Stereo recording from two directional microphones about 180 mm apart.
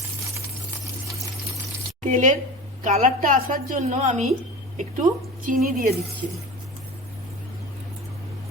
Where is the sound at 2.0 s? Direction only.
45° right (ahead or behind).